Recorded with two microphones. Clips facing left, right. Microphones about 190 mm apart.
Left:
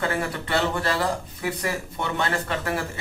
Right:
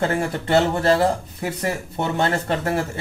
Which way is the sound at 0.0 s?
40° right (ahead or behind).